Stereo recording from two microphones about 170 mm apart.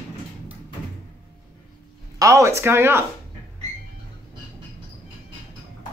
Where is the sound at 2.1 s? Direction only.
20° right (ahead or behind).